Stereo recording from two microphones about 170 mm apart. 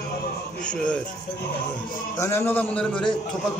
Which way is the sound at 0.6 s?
5° left (ahead or behind).